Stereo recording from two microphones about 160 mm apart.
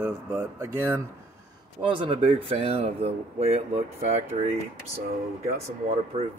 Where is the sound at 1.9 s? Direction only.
35° right (ahead or behind).